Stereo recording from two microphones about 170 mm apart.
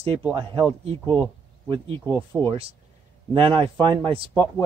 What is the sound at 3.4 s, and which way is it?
Speech, 30° right (ahead or behind).